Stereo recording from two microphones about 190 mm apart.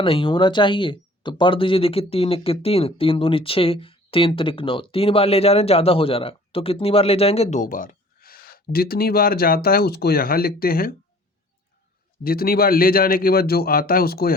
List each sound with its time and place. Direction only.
0.0 s speech: 25° left (ahead or behind); by 10.9 s 50° left (ahead or behind)
12.2 s a man's voice: 50° left (ahead or behind)